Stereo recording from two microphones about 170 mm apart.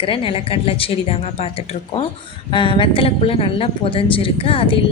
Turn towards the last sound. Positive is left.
turn(degrees=35)  # may be behind; listen again after turning